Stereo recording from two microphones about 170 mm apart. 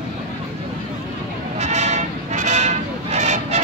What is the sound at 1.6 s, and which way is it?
Vehicle, 40° right (ahead or behind).